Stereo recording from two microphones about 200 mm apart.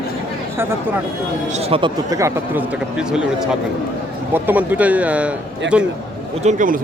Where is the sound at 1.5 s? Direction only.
30° right (ahead or behind); by 5.9 s 5° right (ahead or behind).